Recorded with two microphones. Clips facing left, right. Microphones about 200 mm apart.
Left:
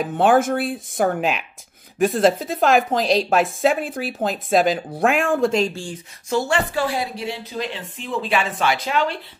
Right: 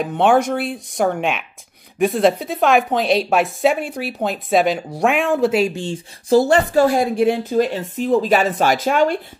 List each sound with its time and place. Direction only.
0.0 s speech: centre (ahead or behind)
6.2 s speech: 35° right (ahead or behind)